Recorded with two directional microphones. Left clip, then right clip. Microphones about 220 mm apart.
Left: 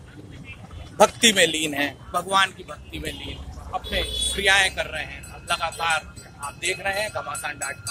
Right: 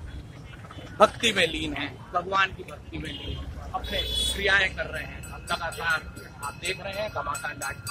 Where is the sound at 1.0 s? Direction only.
30° left (ahead or behind).